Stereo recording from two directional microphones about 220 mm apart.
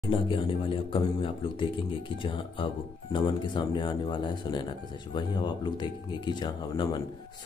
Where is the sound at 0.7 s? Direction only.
25° left (ahead or behind).